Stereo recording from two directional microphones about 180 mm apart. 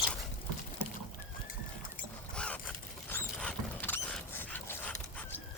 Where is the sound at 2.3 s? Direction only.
5° left (ahead or behind).